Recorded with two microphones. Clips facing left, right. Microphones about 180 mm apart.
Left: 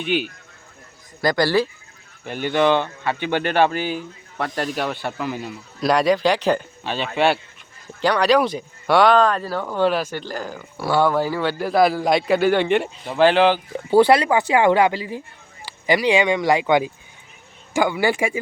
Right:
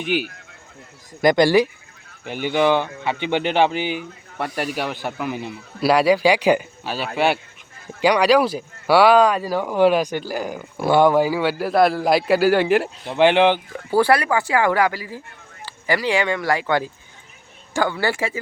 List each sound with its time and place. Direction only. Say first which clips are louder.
0.0 s speech: even; 10° right (ahead or behind)
5.8 s speech: right 2 dB; 5° right (ahead or behind)
13.1 s speech: even; 20° right (ahead or behind)
13.7 s speech: left 3 dB; 20° left (ahead or behind)